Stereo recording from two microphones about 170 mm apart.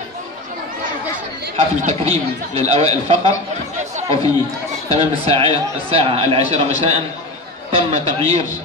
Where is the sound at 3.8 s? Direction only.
45° right (ahead or behind).